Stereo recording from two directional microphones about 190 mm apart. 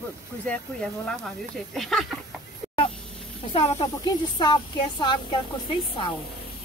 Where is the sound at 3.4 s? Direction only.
30° left (ahead or behind).